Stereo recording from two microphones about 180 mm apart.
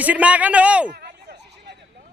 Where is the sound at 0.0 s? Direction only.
10° right (ahead or behind).